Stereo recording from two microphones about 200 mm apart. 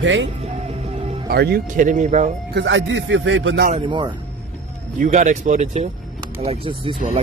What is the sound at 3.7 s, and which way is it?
Speech, 25° right (ahead or behind).